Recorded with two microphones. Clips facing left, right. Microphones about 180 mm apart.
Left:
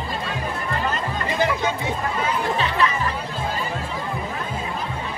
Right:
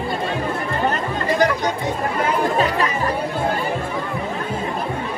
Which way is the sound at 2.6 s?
40° right (ahead or behind).